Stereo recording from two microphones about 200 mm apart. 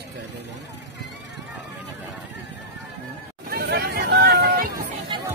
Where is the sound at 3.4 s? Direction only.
50° right (ahead or behind).